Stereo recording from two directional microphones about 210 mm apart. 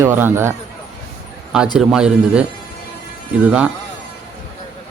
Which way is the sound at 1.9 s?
5° right (ahead or behind).